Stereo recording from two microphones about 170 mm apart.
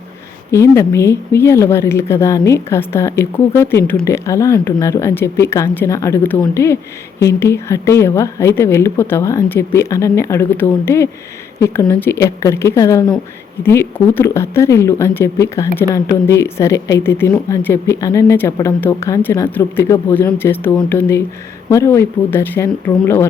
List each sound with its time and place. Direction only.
0.5 s speech: 15° left (ahead or behind)